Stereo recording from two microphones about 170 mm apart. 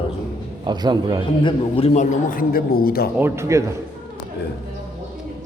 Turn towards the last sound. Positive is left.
turn(degrees=-15)  # may be behind; listen again after turning